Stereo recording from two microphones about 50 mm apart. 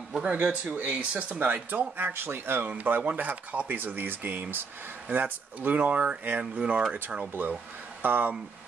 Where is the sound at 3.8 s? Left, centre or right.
Right.